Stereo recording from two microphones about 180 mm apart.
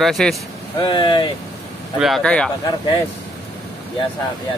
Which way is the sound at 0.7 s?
25° left (ahead or behind).